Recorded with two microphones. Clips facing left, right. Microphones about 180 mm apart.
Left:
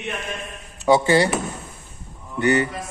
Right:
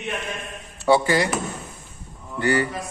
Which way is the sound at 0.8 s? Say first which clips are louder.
Left 2 dB; 20° left (ahead or behind).